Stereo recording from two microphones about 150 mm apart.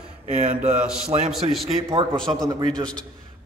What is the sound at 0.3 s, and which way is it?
Speech, 55° right (ahead or behind).